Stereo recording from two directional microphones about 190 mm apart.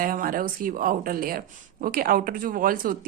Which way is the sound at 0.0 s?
45° right (ahead or behind).